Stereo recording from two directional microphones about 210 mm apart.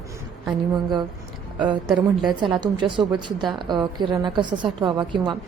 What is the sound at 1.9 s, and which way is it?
Speech, centre (ahead or behind).